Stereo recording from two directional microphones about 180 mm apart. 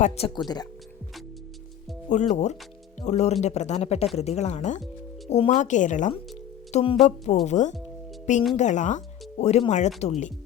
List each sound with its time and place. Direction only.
0.0 s speech: 35° left (ahead or behind)
0.3 s speech: 20° left (ahead or behind)
2.0 s speech: 40° left (ahead or behind)
6.7 s music: 40° left (ahead or behind)
7.4 s speech: 40° left (ahead or behind)